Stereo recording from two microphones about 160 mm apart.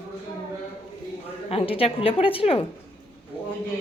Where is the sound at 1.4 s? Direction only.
35° left (ahead or behind).